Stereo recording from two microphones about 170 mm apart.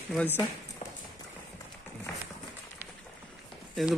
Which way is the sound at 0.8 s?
45° left (ahead or behind).